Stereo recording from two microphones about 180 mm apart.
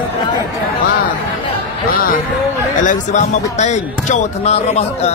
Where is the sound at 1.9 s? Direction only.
55° left (ahead or behind).